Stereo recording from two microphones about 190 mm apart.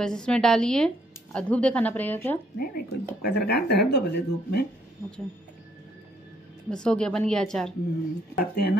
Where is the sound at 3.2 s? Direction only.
60° left (ahead or behind).